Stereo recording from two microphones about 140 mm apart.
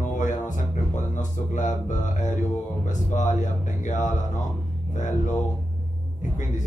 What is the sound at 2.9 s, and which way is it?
Speech, 60° left (ahead or behind).